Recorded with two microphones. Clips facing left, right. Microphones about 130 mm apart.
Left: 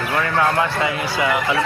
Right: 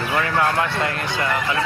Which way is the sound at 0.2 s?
Centre (ahead or behind).